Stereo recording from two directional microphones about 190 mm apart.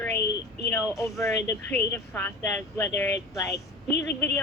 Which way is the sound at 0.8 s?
Centre (ahead or behind).